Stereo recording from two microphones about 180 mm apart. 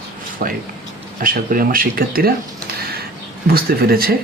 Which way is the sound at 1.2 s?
50° right (ahead or behind).